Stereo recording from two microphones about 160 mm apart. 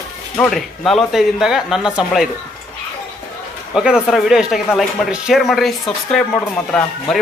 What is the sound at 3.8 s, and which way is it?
Speech, 5° right (ahead or behind).